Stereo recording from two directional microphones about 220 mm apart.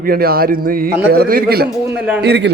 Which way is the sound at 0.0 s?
45° right (ahead or behind).